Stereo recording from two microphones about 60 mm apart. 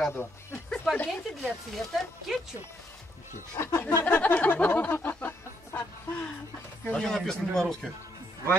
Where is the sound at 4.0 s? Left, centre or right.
Left.